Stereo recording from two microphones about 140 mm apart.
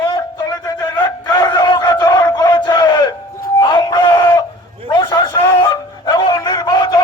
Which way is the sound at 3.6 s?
30° left (ahead or behind).